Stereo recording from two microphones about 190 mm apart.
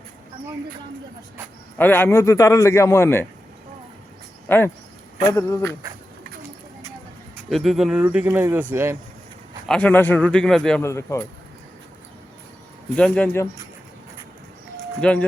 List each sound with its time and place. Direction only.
1.8 s a man's voice: 10° left (ahead or behind)
4.4 s a man's voice: 10° left (ahead or behind)
7.5 s speech: centre (ahead or behind)
9.6 s speech: 5° left (ahead or behind)
10.8 s a man's voice: 15° left (ahead or behind)
13.0 s a man's voice: 5° left (ahead or behind)
15.0 s speech: 5° left (ahead or behind)